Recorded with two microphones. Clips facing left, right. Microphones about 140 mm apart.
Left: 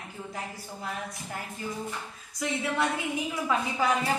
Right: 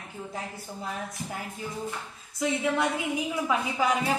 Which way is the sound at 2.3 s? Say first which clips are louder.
Right 3 dB; 15° right (ahead or behind).